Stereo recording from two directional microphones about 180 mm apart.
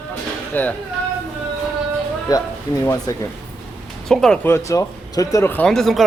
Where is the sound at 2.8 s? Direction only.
15° left (ahead or behind).